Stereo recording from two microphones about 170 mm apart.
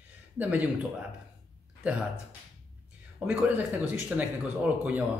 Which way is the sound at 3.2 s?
10° right (ahead or behind).